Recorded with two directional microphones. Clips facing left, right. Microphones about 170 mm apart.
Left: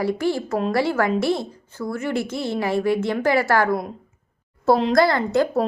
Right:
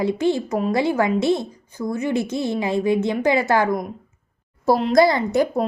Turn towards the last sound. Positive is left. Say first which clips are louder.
# even
turn(degrees=-15)  # may be behind; listen again after turning